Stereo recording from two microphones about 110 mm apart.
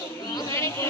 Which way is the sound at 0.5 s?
25° left (ahead or behind).